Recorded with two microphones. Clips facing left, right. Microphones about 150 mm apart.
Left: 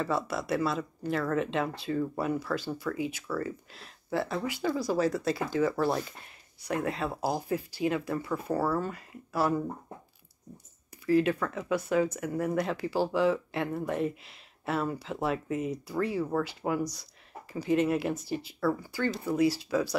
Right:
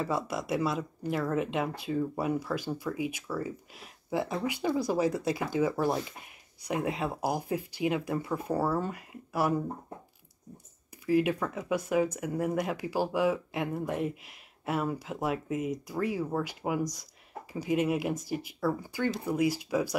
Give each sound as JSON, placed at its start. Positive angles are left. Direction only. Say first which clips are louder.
{"t": 0.0, "sound": "speech", "louder": "left 1 dB", "side_deg": -15}
{"t": 11.1, "sound": "speech", "louder": "left 1 dB", "side_deg": -15}